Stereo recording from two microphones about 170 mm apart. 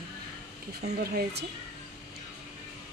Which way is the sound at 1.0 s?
70° right (ahead or behind).